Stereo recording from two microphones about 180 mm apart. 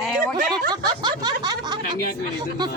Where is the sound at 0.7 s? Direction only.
25° right (ahead or behind).